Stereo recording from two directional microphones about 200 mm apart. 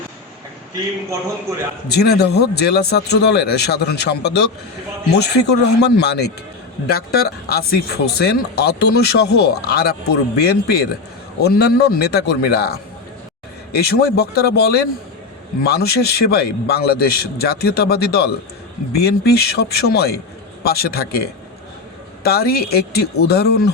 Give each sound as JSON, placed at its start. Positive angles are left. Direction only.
{"t": 1.9, "sound": "speech", "side_deg": 55}